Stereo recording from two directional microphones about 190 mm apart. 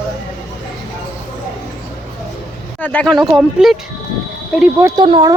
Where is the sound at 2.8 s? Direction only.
5° left (ahead or behind).